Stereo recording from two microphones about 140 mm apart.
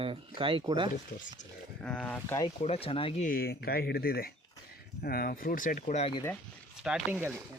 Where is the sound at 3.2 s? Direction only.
85° left; by 6.1 s 55° left (ahead or behind).